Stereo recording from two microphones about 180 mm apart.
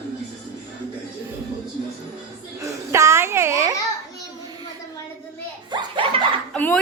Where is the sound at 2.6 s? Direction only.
15° right (ahead or behind).